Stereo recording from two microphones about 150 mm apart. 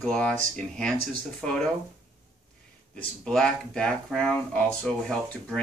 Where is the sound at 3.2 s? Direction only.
5° left (ahead or behind).